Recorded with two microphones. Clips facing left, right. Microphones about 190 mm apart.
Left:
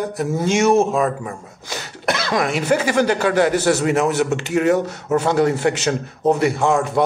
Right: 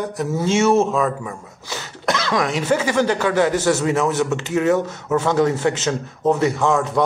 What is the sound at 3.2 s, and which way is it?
Speech, 40° left (ahead or behind).